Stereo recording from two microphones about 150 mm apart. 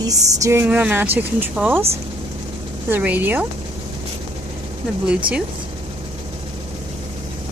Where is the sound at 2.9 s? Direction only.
10° right (ahead or behind).